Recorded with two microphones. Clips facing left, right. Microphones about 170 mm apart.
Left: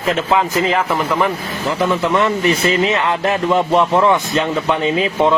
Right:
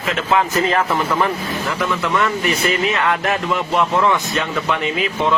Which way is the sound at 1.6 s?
25° left (ahead or behind).